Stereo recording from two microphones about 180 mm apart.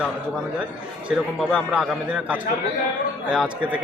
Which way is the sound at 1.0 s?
5° right (ahead or behind).